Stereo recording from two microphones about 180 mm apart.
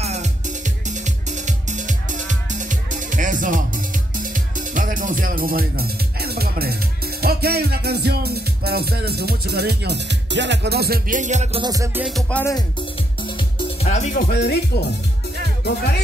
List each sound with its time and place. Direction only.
0.0 s music: 40° right (ahead or behind)
4.2 s speech: 45° right (ahead or behind)
11.6 s music: 20° right (ahead or behind)
12.1 s music: 5° left (ahead or behind)
13.6 s music: 35° left (ahead or behind)
14.3 s speech: 65° left (ahead or behind)